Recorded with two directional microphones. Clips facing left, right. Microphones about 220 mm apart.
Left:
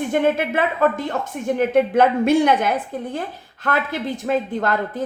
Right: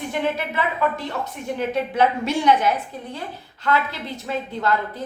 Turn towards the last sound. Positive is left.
turn(degrees=50)  # may be behind; listen again after turning